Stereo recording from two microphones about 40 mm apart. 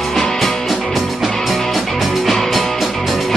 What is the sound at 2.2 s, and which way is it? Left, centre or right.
Music, centre.